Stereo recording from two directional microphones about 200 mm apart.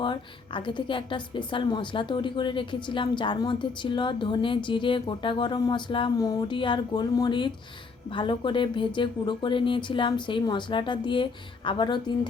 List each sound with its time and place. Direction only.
0.0 s a woman's voice: 25° left (ahead or behind)